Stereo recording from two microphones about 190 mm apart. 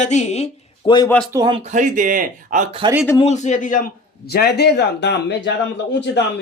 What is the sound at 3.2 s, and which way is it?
A man's voice, 35° left (ahead or behind).